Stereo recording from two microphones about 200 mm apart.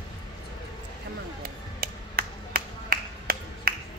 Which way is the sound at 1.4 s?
45° right (ahead or behind).